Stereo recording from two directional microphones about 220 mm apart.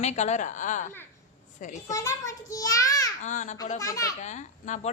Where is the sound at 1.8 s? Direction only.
15° left (ahead or behind).